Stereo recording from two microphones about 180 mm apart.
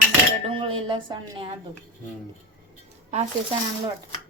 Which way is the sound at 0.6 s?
30° right (ahead or behind).